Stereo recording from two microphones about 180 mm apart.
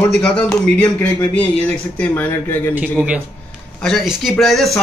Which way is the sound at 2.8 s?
10° right (ahead or behind).